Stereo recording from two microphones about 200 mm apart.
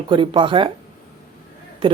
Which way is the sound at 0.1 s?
25° right (ahead or behind).